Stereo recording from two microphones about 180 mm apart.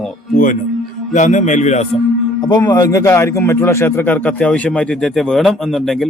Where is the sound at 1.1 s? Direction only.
40° left (ahead or behind).